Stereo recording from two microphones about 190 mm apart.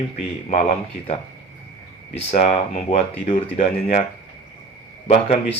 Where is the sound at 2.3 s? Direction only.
35° left (ahead or behind).